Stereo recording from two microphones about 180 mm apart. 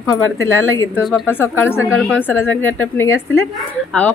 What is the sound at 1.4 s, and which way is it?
A woman's voice, 10° left (ahead or behind).